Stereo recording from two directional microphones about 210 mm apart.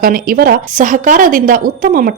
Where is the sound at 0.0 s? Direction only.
45° right (ahead or behind).